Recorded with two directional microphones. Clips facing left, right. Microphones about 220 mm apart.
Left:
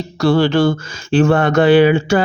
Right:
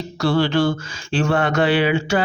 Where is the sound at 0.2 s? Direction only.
45° left (ahead or behind).